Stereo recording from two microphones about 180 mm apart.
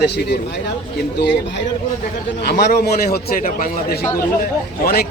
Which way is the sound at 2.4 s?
60° left (ahead or behind).